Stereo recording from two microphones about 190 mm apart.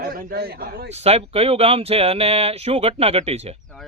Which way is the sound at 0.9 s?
35° right (ahead or behind).